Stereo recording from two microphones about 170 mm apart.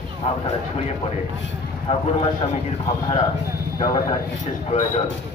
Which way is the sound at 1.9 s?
40° left (ahead or behind).